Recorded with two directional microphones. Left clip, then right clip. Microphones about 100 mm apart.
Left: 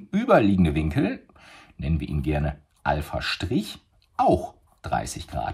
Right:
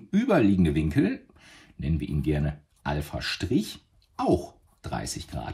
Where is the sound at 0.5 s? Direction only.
65° left (ahead or behind).